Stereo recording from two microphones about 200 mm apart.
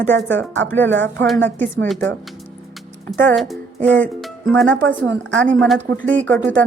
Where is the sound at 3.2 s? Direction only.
10° left (ahead or behind).